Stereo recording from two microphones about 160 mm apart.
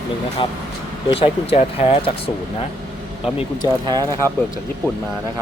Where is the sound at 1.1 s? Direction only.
40° left (ahead or behind).